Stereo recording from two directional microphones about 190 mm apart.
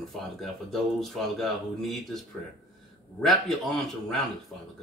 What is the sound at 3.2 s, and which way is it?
Speech, centre (ahead or behind).